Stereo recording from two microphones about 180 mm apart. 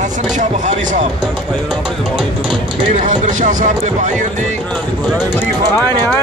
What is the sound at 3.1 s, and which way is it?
Speech, 45° right (ahead or behind).